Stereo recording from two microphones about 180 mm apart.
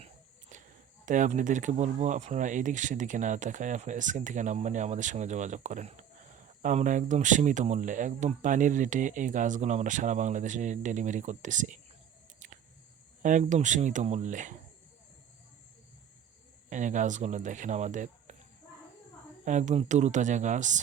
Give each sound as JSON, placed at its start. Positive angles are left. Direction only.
{"t": 0.5, "sound": "a sound", "side_deg": -45}
{"t": 1.0, "sound": "speech", "side_deg": -45}
{"t": 12.4, "sound": "a sound", "side_deg": -45}
{"t": 13.2, "sound": "speech", "side_deg": -45}
{"t": 16.6, "sound": "speech", "side_deg": -45}
{"t": 19.5, "sound": "speech", "side_deg": -40}